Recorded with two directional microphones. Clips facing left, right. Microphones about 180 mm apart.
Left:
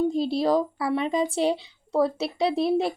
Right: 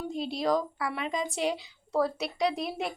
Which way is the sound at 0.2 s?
30° left (ahead or behind).